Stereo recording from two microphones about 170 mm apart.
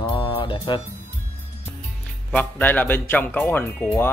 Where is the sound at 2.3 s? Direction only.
10° left (ahead or behind).